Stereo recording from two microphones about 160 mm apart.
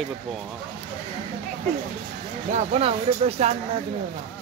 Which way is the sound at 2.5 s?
45° right (ahead or behind).